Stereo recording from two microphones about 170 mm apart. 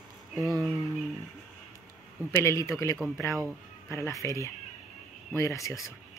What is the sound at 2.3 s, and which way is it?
Speech, 15° left (ahead or behind).